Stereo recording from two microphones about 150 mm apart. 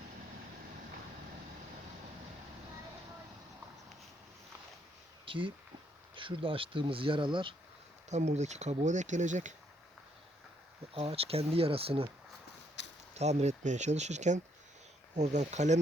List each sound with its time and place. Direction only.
5.2 s a sound: 35° right (ahead or behind)
6.1 s speech: 35° right (ahead or behind)
8.1 s speech: 50° right (ahead or behind)
10.9 s speech: 40° right (ahead or behind)
13.1 s speech: 45° right (ahead or behind)